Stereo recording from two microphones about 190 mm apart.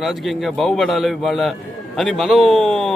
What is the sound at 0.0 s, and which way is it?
A man's voice, centre (ahead or behind).